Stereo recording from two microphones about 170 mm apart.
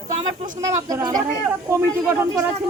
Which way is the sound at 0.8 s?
25° right (ahead or behind).